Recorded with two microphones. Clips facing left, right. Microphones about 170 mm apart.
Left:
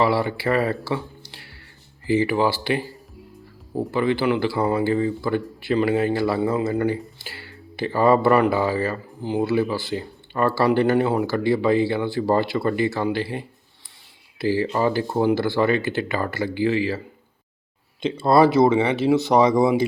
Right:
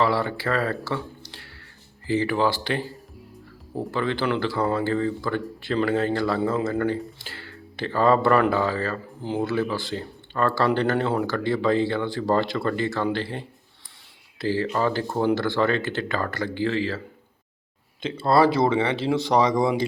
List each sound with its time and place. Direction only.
0.0 s speech: 10° left (ahead or behind)
14.4 s speech: 10° left (ahead or behind)
18.0 s speech: 15° left (ahead or behind)